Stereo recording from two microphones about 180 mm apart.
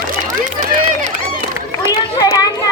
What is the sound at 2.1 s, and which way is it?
Children playing, 20° left (ahead or behind).